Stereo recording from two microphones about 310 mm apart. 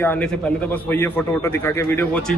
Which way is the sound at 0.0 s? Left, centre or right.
Centre.